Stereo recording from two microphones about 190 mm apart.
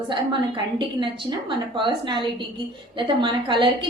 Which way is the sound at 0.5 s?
25° right (ahead or behind).